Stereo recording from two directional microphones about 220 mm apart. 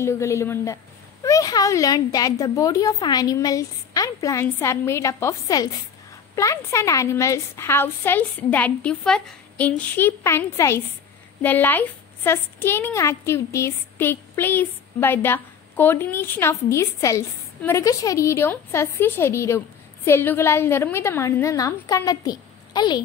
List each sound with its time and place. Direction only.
0.0 s a child's voice: 15° left (ahead or behind)